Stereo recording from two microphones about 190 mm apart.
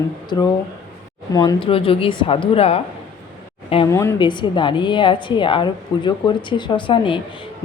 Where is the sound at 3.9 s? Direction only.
15° left (ahead or behind).